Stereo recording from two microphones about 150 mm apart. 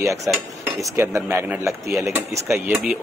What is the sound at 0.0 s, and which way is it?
Cutlery, 20° right (ahead or behind).